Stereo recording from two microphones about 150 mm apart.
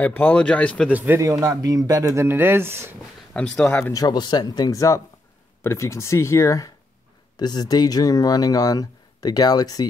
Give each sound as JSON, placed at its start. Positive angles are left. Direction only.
{"t": 0.0, "sound": "speech", "side_deg": 10}
{"t": 0.8, "sound": "speech", "side_deg": -10}
{"t": 3.3, "sound": "speech", "side_deg": 10}